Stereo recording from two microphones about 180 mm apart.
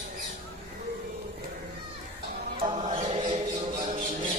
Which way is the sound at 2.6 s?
35° right (ahead or behind).